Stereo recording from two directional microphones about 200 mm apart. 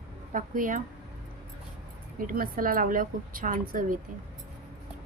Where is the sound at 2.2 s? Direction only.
45° right (ahead or behind).